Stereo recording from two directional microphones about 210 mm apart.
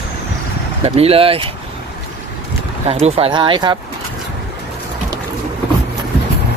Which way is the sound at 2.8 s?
30° right (ahead or behind).